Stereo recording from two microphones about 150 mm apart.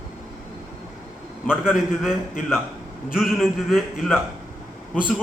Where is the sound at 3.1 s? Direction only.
Centre (ahead or behind).